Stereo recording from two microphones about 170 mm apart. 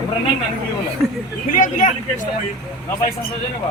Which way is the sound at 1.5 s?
50° left (ahead or behind).